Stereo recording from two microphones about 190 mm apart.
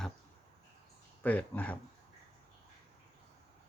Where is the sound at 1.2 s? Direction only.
5° left (ahead or behind).